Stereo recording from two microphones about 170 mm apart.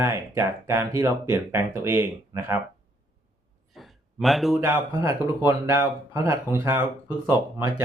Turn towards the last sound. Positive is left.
turn(degrees=-15)  # may be behind; listen again after turning